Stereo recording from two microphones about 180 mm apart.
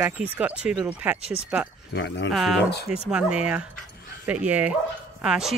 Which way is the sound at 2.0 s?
75° left (ahead or behind).